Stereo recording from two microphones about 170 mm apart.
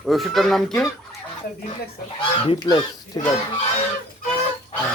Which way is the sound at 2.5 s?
25° left (ahead or behind).